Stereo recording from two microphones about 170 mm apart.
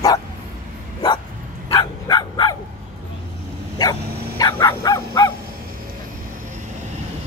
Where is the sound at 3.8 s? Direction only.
20° left (ahead or behind).